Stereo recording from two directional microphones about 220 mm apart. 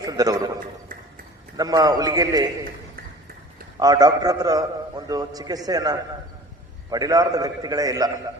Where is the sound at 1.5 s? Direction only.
15° right (ahead or behind).